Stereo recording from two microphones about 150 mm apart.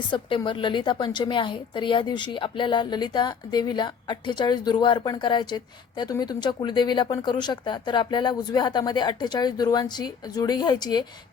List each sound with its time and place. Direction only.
0.1 s a woman's voice: 30° left (ahead or behind)